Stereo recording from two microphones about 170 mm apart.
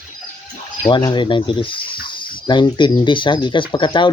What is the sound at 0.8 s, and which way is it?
Speech, 30° left (ahead or behind).